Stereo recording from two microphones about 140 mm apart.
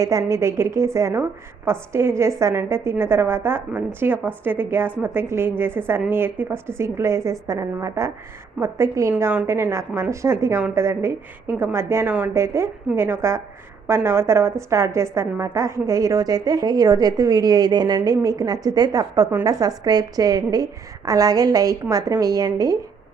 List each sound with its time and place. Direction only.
0.0 s a woman's voice: 25° right (ahead or behind)